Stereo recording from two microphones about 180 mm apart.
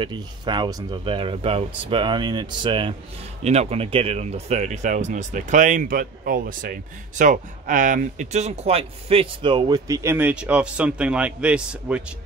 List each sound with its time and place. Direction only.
0.0 s speech: 25° right (ahead or behind); by 12.0 s 5° right (ahead or behind)